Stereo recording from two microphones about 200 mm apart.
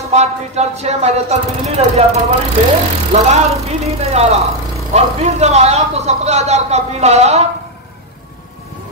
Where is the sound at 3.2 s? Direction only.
30° right (ahead or behind).